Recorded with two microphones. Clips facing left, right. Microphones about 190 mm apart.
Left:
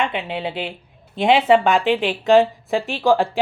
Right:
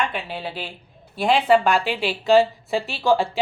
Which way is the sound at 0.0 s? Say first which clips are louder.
Left 4 dB; 20° left (ahead or behind).